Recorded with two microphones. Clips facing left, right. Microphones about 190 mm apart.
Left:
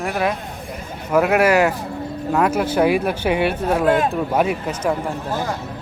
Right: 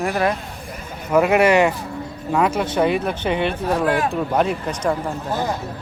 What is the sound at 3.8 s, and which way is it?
Speech, 25° left (ahead or behind).